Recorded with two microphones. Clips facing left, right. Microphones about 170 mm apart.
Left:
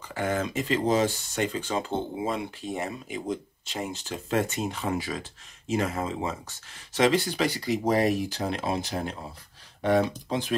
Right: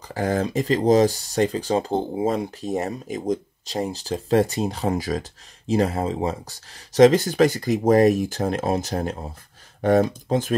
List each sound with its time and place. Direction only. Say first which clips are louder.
0.1 s speech: right 5 dB; 35° right (ahead or behind)